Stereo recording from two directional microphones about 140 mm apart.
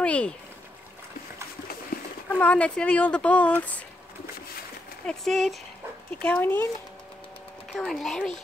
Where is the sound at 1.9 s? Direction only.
90° left.